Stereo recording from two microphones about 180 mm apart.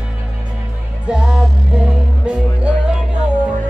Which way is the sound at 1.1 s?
5° right (ahead or behind).